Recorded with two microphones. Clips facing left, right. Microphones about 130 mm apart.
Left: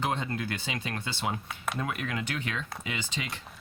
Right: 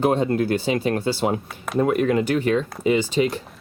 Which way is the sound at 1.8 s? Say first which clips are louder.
Right 18 dB; 35° right (ahead or behind).